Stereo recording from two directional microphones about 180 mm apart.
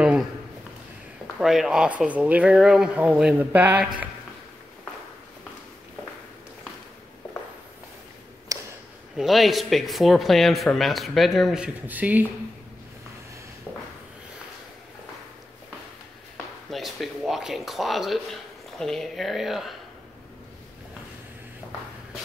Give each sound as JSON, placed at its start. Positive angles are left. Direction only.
{"t": 1.4, "sound": "speech", "side_deg": 0}
{"t": 8.5, "sound": "a sound", "side_deg": -20}
{"t": 9.1, "sound": "speech", "side_deg": 0}
{"t": 16.7, "sound": "speech", "side_deg": 0}